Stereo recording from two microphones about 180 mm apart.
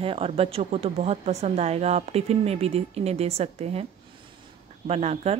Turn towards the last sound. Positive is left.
turn(degrees=-35)  # may be behind; listen again after turning